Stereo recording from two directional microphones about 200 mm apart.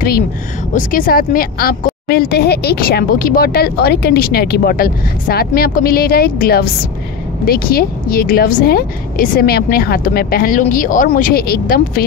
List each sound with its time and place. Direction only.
0.7 s a woman's voice: 45° left (ahead or behind)